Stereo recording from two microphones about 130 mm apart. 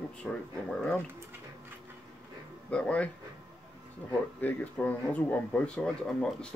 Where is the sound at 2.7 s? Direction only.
10° left (ahead or behind).